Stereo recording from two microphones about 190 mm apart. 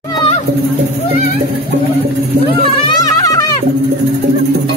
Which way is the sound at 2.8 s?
20° left (ahead or behind).